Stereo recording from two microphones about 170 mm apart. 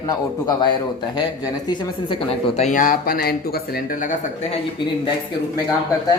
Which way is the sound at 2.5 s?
45° left (ahead or behind).